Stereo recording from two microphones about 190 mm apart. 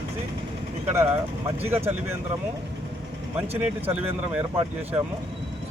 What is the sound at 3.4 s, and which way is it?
Speech, 30° right (ahead or behind).